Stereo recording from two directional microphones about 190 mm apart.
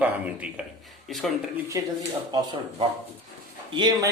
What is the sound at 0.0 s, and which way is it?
Speech, 5° right (ahead or behind).